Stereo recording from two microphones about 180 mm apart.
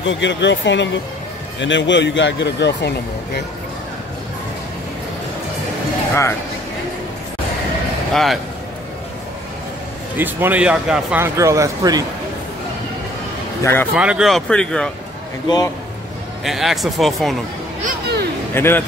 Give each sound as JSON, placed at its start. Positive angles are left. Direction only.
{"t": 0.0, "sound": "a man's voice", "side_deg": 85}
{"t": 8.1, "sound": "speech", "side_deg": 0}
{"t": 10.1, "sound": "speech", "side_deg": -10}
{"t": 11.3, "sound": "speech", "side_deg": -15}
{"t": 13.6, "sound": "speech", "side_deg": 15}
{"t": 13.9, "sound": "speech", "side_deg": -5}
{"t": 15.4, "sound": "a man's voice", "side_deg": 20}
{"t": 16.4, "sound": "speech", "side_deg": 0}
{"t": 17.8, "sound": "music", "side_deg": -60}
{"t": 18.5, "sound": "speech", "side_deg": 10}